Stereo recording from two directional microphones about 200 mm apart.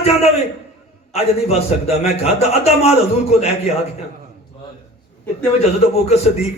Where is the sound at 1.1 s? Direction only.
30° left (ahead or behind).